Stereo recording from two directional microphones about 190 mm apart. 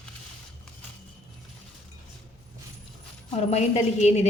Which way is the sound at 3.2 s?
35° left (ahead or behind).